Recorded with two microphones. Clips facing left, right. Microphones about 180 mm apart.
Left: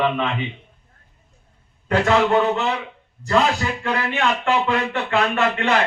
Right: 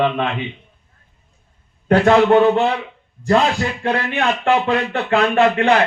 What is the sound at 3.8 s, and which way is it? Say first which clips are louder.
Speech: right 3 dB; 35° right (ahead or behind).